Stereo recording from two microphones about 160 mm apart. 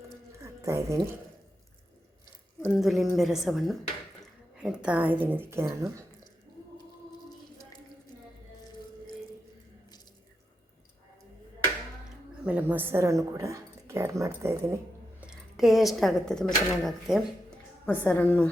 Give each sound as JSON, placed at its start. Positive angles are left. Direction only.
{"t": 0.4, "sound": "a sound", "side_deg": -20}
{"t": 2.7, "sound": "a woman's voice", "side_deg": 0}
{"t": 12.5, "sound": "speech", "side_deg": -10}
{"t": 15.2, "sound": "a woman's voice", "side_deg": -5}